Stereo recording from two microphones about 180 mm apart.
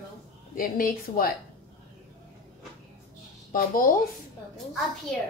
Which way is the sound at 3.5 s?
50° left (ahead or behind).